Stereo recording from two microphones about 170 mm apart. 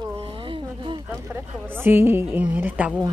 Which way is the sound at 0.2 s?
30° right (ahead or behind).